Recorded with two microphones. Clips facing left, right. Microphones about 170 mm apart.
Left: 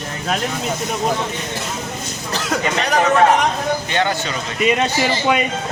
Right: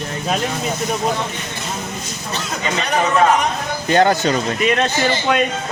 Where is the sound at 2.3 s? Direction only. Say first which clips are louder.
Left 3 dB; 75° left (ahead or behind).